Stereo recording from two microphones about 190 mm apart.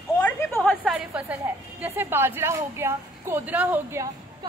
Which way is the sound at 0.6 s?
5° left (ahead or behind).